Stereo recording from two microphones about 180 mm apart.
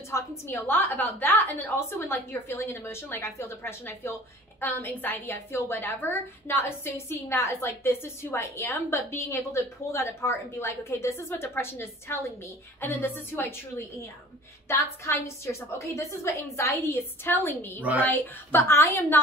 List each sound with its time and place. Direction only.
0.1 s a woman's voice: 15° left (ahead or behind)